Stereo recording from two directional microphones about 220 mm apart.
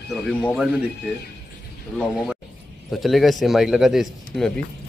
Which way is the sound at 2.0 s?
Centre (ahead or behind).